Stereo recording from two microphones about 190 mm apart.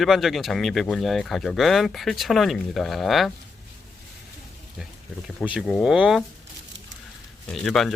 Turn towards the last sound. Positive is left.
turn(degrees=5)  # may be behind; listen again after turning